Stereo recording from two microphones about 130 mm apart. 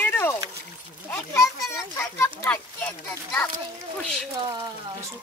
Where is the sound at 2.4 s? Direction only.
15° left (ahead or behind).